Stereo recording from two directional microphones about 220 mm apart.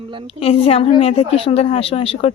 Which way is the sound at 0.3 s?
25° left (ahead or behind).